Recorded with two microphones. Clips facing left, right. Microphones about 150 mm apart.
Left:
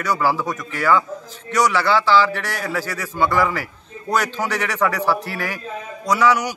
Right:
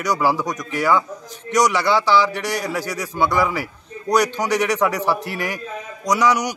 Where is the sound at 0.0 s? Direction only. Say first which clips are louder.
Right 1 dB; 15° right (ahead or behind).